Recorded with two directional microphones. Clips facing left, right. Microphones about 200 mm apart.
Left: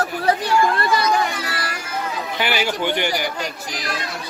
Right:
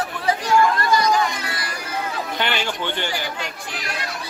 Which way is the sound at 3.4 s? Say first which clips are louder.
Left 3 dB; 35° left (ahead or behind).